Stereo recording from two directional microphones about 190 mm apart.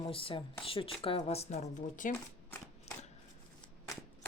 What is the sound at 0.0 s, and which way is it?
Speech, 30° left (ahead or behind).